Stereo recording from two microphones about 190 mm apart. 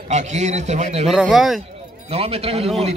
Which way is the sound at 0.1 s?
35° right (ahead or behind).